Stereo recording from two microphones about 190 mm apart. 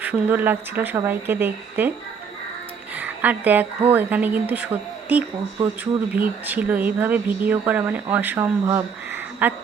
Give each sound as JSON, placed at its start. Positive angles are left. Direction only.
{"t": 0.0, "sound": "a woman's voice", "side_deg": -10}
{"t": 2.9, "sound": "a woman's voice", "side_deg": -10}